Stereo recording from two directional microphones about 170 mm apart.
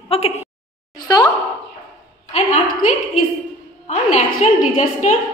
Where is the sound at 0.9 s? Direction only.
25° left (ahead or behind).